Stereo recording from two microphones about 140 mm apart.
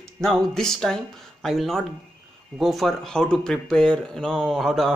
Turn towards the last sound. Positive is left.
turn(degrees=0)  # may be behind; listen again after turning